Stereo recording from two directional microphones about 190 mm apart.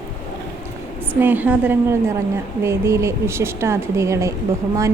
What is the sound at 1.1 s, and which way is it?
A woman's voice, 10° right (ahead or behind).